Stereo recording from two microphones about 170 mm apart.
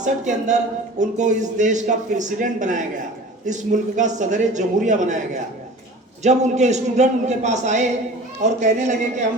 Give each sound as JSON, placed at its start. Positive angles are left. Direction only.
{"t": 0.0, "sound": "speech", "side_deg": -45}